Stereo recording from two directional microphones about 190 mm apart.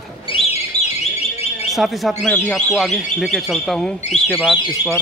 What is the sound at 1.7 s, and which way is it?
A man's voice, centre (ahead or behind).